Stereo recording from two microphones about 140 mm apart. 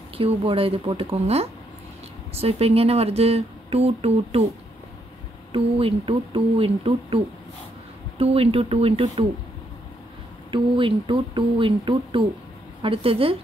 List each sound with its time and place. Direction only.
0.2 s speech: 40° right (ahead or behind)
5.5 s speech: 40° right (ahead or behind)
8.2 s speech: 45° right (ahead or behind)
10.5 s speech: 40° right (ahead or behind)